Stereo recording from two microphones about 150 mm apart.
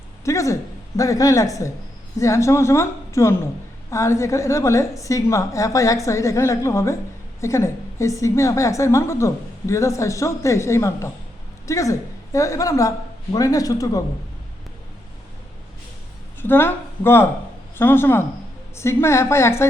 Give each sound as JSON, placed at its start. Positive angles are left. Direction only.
{"t": 0.3, "sound": "a woman's voice", "side_deg": 20}
{"t": 16.4, "sound": "speech", "side_deg": 15}